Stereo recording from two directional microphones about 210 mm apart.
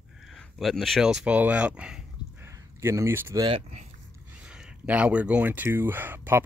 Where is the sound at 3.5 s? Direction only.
30° right (ahead or behind).